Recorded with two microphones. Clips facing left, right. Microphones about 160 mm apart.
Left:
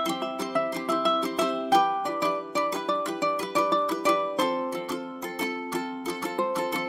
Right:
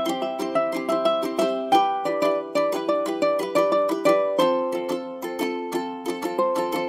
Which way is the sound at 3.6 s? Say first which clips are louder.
Right 5 dB; 20° right (ahead or behind).